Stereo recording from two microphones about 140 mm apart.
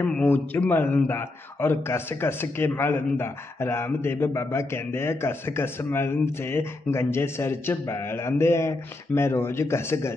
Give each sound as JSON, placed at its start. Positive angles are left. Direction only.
{"t": 0.0, "sound": "a man's voice", "side_deg": 10}